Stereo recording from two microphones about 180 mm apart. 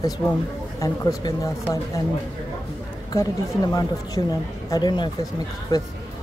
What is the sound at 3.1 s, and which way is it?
A woman's voice, 20° left (ahead or behind).